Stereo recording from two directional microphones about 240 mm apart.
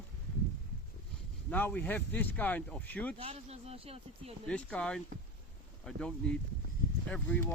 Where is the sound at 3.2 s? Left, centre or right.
Right.